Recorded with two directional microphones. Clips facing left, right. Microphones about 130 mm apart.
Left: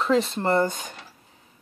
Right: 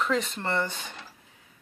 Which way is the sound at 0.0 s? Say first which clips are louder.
Left 6 dB; 35° left (ahead or behind).